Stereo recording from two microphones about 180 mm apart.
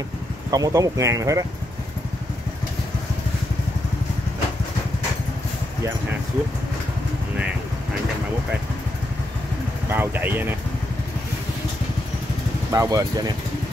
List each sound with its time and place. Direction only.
0.5 s speech: 20° right (ahead or behind)
9.9 s speech: 10° right (ahead or behind)
12.7 s speech: 20° right (ahead or behind)